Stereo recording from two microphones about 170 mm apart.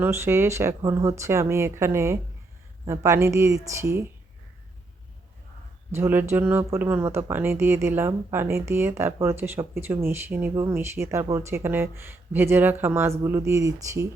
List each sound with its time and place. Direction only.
0.0 s speech: 15° right (ahead or behind)
5.9 s speech: 15° right (ahead or behind)